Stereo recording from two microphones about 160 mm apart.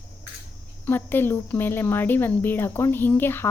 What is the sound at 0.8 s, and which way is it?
Speech, 15° left (ahead or behind).